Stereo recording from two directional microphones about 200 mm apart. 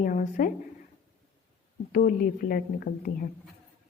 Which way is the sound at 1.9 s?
45° left (ahead or behind).